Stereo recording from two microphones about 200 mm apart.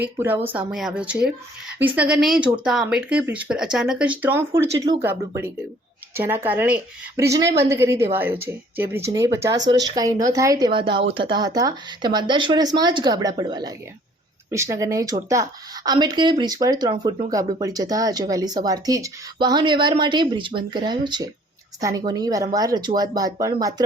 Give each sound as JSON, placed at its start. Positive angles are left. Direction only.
{"t": 0.0, "sound": "a woman's voice", "side_deg": -10}